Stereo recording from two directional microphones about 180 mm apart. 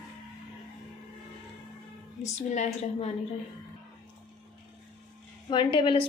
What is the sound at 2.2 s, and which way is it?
Speech, 40° left (ahead or behind).